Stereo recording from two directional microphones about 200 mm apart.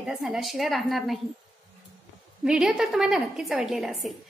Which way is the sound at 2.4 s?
5° right (ahead or behind).